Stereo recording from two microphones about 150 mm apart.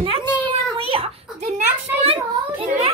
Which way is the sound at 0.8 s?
40° right (ahead or behind).